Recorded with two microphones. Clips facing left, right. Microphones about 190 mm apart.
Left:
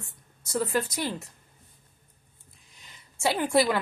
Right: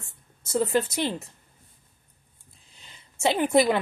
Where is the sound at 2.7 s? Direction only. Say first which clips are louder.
Right 1 dB; 30° right (ahead or behind).